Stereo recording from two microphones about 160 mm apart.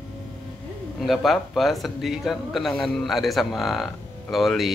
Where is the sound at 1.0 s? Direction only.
Centre (ahead or behind).